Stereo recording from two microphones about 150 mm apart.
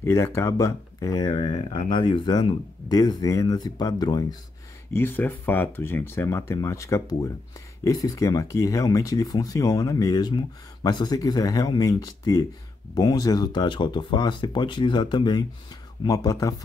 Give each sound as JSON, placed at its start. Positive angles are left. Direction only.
{"t": 0.0, "sound": "speech", "side_deg": 20}
{"t": 1.4, "sound": "speech", "side_deg": 45}
{"t": 4.9, "sound": "speech", "side_deg": 15}